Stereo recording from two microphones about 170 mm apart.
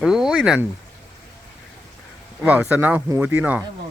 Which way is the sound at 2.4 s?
10° right (ahead or behind).